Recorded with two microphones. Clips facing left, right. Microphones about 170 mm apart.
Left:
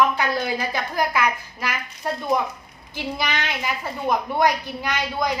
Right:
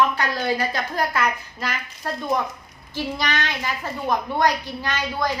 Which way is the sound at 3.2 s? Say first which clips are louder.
Left 2 dB; 10° left (ahead or behind).